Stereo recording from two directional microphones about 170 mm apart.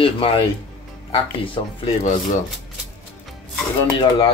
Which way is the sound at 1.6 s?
25° left (ahead or behind).